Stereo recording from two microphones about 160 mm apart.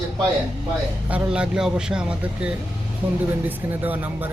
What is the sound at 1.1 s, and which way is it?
Speech, 5° right (ahead or behind).